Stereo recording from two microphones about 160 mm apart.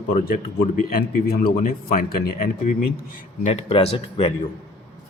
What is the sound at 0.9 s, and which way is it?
Speech, 70° left (ahead or behind).